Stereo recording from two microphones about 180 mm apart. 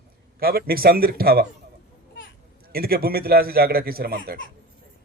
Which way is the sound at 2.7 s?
55° right (ahead or behind).